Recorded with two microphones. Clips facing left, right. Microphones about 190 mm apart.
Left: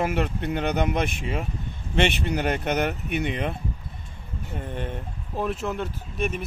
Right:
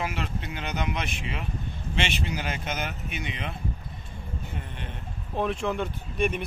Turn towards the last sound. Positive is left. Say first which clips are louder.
# right 1 dB
turn(degrees=0)  # may be behind; listen again after turning